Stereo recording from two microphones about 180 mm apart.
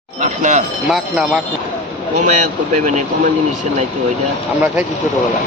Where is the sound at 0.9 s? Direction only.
Centre (ahead or behind).